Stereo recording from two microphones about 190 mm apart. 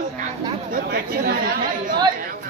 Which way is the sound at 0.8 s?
50° right (ahead or behind).